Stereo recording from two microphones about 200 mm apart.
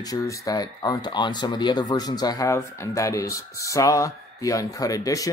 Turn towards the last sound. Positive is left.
turn(degrees=15)  # may be behind; listen again after turning